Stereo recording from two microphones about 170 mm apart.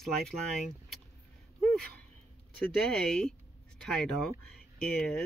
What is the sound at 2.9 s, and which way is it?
Speech, 5° left (ahead or behind).